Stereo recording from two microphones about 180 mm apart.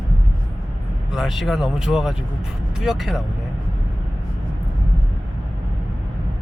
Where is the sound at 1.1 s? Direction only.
Centre (ahead or behind).